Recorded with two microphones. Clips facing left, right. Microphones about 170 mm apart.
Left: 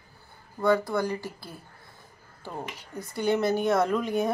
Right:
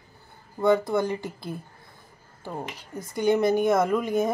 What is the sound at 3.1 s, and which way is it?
Speech, 15° right (ahead or behind).